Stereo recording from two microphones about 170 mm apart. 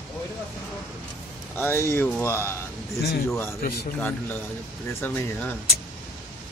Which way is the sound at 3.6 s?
65° left (ahead or behind).